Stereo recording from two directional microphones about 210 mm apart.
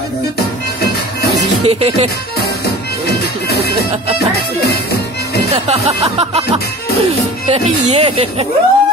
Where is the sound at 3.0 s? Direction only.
50° left (ahead or behind).